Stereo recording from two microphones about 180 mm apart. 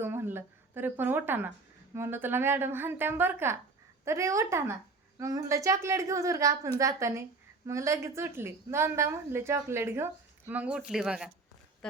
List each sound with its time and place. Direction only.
0.0 s a woman's voice: 10° right (ahead or behind)